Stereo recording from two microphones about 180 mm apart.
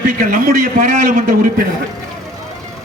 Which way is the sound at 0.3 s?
50° right (ahead or behind).